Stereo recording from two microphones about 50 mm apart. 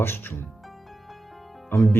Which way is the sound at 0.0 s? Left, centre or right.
Left.